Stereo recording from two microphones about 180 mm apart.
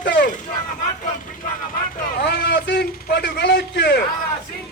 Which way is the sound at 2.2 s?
65° left (ahead or behind).